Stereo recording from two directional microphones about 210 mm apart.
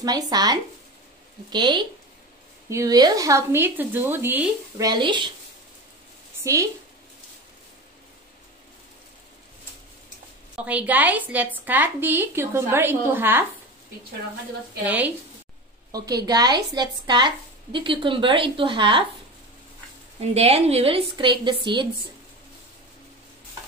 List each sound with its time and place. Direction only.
0.0 s a woman's voice: 20° right (ahead or behind)
6.4 s a woman's voice: 15° right (ahead or behind)
10.5 s a woman's voice: 5° right (ahead or behind)
14.9 s a woman's voice: 5° right (ahead or behind)
15.9 s a woman's voice: 20° right (ahead or behind)
20.2 s a woman's voice: 30° right (ahead or behind)